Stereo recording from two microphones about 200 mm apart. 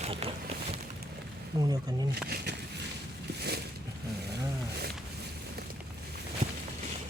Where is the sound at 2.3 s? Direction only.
55° right (ahead or behind).